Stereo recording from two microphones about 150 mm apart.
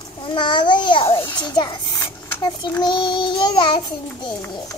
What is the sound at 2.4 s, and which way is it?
Child singing, 25° left (ahead or behind).